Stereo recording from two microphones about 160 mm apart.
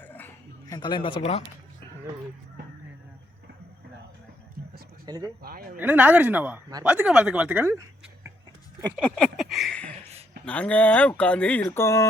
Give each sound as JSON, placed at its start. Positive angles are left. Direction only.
{"t": 0.0, "sound": "a sound", "side_deg": 10}
{"t": 0.7, "sound": "speech", "side_deg": 30}
{"t": 1.2, "sound": "speech", "side_deg": 45}
{"t": 5.0, "sound": "speech", "side_deg": -25}
{"t": 5.4, "sound": "a man's voice", "side_deg": -70}
{"t": 5.7, "sound": "a woman's voice", "side_deg": -10}
{"t": 9.1, "sound": "a sound", "side_deg": 0}
{"t": 10.4, "sound": "speech", "side_deg": 10}